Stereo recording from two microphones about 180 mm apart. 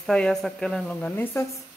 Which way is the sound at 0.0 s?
5° left (ahead or behind).